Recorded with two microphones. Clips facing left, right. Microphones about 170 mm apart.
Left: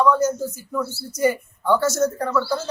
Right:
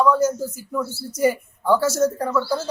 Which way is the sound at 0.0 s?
5° right (ahead or behind).